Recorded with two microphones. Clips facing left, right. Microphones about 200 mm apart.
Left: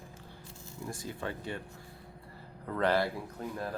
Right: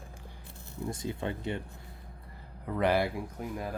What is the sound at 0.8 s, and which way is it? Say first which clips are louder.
Speech: right 4 dB; 20° right (ahead or behind).